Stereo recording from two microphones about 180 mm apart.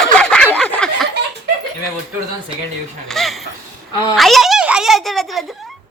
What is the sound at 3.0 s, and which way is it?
A woman's voice, centre (ahead or behind).